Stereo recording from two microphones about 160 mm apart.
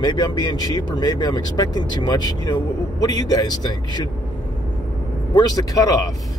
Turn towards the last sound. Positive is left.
turn(degrees=20)  # may be behind; listen again after turning